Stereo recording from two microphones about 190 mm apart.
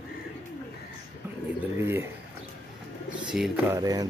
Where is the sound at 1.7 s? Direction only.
10° right (ahead or behind).